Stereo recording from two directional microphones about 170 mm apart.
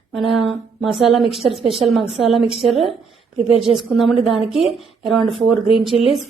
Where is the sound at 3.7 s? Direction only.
Centre (ahead or behind).